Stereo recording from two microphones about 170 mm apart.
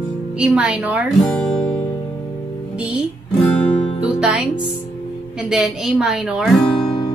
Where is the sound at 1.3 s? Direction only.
5° left (ahead or behind).